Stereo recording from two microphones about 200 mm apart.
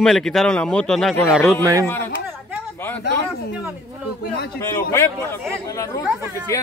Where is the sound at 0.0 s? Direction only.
Centre (ahead or behind).